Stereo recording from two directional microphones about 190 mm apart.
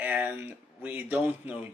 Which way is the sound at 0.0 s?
10° right (ahead or behind).